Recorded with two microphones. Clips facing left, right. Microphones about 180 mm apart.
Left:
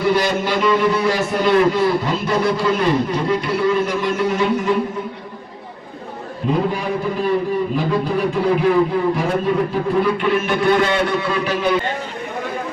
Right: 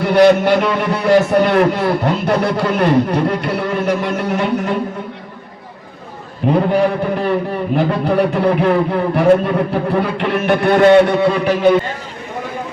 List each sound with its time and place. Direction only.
0.0 s a man's voice: 60° right (ahead or behind)
6.5 s a man's voice: 65° right (ahead or behind)